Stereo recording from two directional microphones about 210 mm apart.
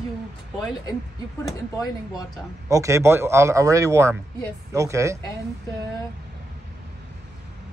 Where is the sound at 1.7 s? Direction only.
20° left (ahead or behind).